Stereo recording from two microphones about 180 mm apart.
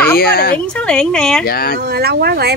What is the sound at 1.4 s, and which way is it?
Speech, 60° left (ahead or behind).